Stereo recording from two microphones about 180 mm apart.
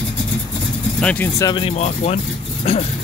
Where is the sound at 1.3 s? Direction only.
25° left (ahead or behind).